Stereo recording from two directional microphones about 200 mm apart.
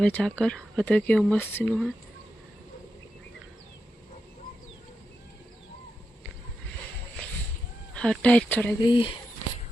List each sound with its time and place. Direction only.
0.0 s speech: 5° left (ahead or behind)
7.9 s speech: 5° left (ahead or behind)
8.8 s speech: 25° left (ahead or behind)